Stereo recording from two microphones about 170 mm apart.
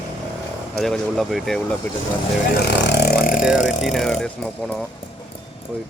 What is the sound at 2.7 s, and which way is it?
Speech, 90° left.